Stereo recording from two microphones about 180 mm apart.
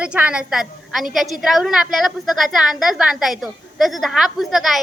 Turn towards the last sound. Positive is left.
turn(degrees=0)  # may be behind; listen again after turning